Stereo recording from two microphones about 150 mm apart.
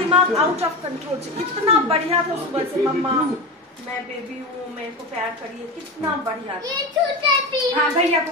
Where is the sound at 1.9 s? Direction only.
40° right (ahead or behind).